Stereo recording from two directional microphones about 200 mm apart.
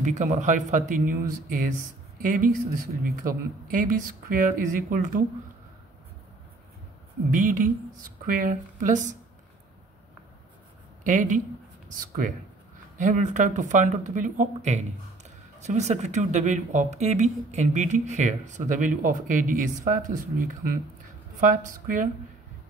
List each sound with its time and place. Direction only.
0.0 s speech: 35° right (ahead or behind)
7.2 s speech: 45° right (ahead or behind)
11.1 s speech: 40° right (ahead or behind)
12.9 s speech: 40° right (ahead or behind)